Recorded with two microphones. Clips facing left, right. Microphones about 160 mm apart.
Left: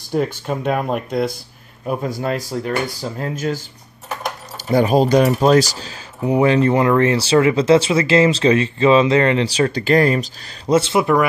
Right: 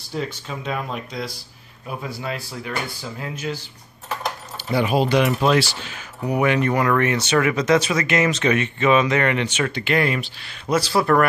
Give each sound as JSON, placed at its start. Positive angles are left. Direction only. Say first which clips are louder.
{"t": 0.1, "sound": "speech", "louder": "left 8 dB", "side_deg": 55}
{"t": 4.6, "sound": "speech", "louder": "left 5 dB", "side_deg": 40}
{"t": 6.2, "sound": "speech", "louder": "left 5 dB", "side_deg": 25}